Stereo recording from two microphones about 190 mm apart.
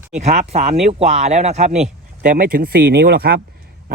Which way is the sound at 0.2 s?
35° right (ahead or behind).